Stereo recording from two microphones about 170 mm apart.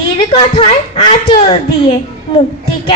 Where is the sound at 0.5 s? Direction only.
35° left (ahead or behind).